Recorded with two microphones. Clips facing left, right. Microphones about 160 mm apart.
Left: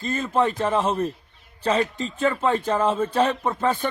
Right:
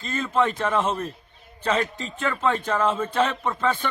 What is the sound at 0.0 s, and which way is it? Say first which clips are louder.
A man's voice: left 1 dB; 35° left (ahead or behind).